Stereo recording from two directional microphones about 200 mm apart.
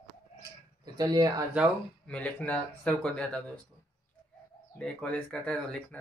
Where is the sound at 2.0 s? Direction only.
5° left (ahead or behind).